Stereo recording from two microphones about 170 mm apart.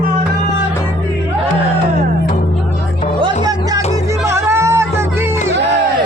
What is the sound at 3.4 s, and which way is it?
Music, 20° right (ahead or behind).